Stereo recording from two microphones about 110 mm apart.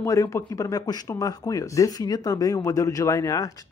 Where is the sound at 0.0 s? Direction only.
30° left (ahead or behind).